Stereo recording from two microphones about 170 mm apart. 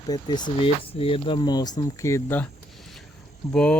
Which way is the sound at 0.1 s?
25° left (ahead or behind).